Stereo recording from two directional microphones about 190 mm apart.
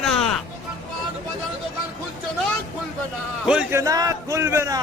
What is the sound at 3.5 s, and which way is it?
Speech, 5° right (ahead or behind).